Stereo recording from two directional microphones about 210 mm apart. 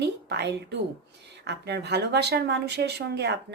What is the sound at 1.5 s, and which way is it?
Speech, 55° right (ahead or behind).